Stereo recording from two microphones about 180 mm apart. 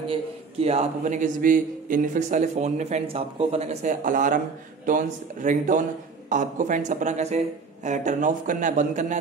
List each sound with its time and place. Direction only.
0.6 s a man's voice: 35° right (ahead or behind)